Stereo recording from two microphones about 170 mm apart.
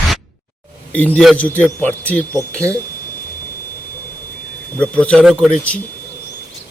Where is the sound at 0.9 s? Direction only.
10° left (ahead or behind).